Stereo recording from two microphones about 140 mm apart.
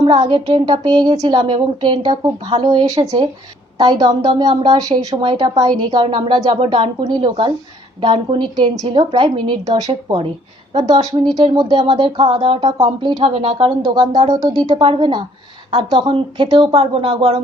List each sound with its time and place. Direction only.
0.0 s speech: 30° right (ahead or behind)
14.8 s speech: 40° right (ahead or behind)